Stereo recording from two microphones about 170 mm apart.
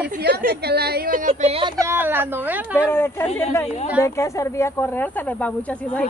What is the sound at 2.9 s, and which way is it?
Speech, 15° left (ahead or behind).